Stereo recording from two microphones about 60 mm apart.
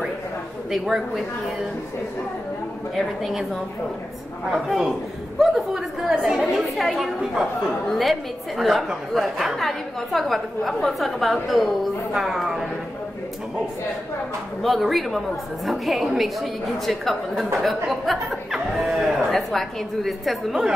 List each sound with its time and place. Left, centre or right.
0.7 s a man's voice: centre
4.5 s a man's voice: centre
14.6 s a woman's voice: centre